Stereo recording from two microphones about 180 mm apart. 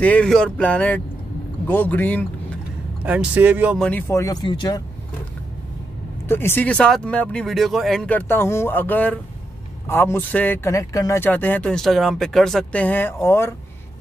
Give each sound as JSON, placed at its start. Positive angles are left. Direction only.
{"t": 0.0, "sound": "a man's voice", "side_deg": 5}
{"t": 3.0, "sound": "speech", "side_deg": -5}
{"t": 3.7, "sound": "speech", "side_deg": 5}
{"t": 4.1, "sound": "speech", "side_deg": 20}
{"t": 6.2, "sound": "a man's voice", "side_deg": 10}